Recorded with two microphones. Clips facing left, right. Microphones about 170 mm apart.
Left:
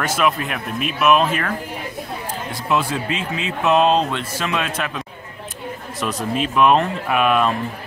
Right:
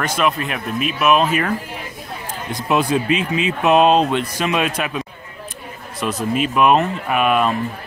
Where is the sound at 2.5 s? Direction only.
15° right (ahead or behind).